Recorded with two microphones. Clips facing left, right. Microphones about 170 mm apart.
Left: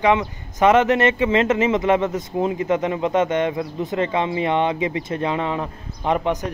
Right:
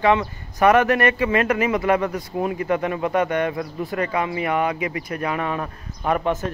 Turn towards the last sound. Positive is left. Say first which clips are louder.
# left 1 dB
turn(degrees=15)  # may be behind; listen again after turning